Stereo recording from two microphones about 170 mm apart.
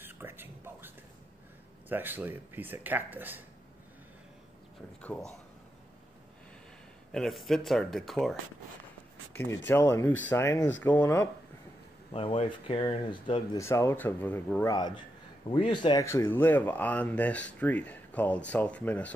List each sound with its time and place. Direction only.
0.0 s a sound: 10° right (ahead or behind)
1.9 s speech: 10° right (ahead or behind)
5.0 s speech: 10° left (ahead or behind)
7.1 s speech: centre (ahead or behind)
9.7 s speech: 15° left (ahead or behind)
12.1 s speech: 35° left (ahead or behind)
13.6 s speech: 15° left (ahead or behind)
14.7 s speech: 25° left (ahead or behind)
16.1 s speech: 15° left (ahead or behind)